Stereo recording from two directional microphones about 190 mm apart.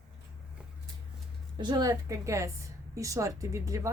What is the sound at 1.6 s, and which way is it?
A woman's voice, 20° right (ahead or behind).